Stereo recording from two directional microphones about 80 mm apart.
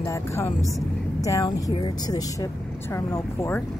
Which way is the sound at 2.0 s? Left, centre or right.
Left.